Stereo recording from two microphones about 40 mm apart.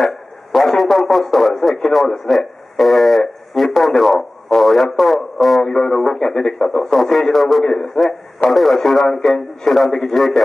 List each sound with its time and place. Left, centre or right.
0.0 s a man's voice: centre
5.6 s speech: centre
7.6 s speech: centre
8.5 s speech: centre